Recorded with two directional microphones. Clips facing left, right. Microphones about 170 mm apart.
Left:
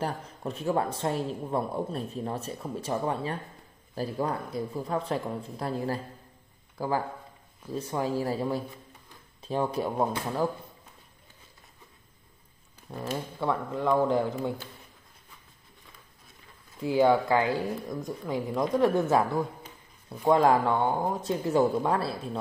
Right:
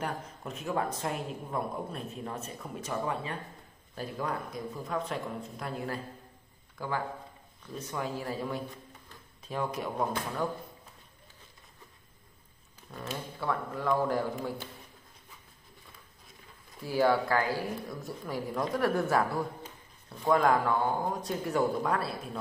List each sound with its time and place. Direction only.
0.0 s speech: 35° left (ahead or behind)
12.9 s speech: 30° left (ahead or behind)
13.4 s speech: 20° left (ahead or behind)
16.8 s speech: 20° left (ahead or behind)